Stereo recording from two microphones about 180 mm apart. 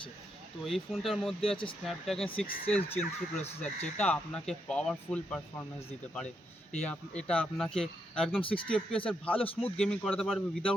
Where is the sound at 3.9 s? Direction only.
5° left (ahead or behind).